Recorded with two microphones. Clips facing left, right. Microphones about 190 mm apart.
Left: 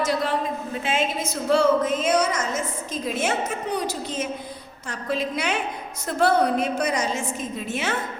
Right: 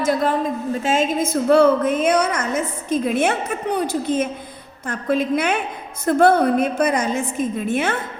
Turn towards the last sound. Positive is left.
turn(degrees=-55)  # may be behind; listen again after turning